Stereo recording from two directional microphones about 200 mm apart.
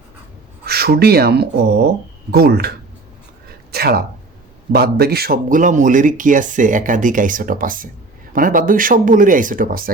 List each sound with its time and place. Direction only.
0.6 s speech: 50° right (ahead or behind)
3.7 s a sound: 50° right (ahead or behind)
4.7 s speech: 50° right (ahead or behind)